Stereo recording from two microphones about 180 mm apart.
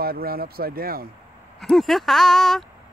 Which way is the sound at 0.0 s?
55° right (ahead or behind).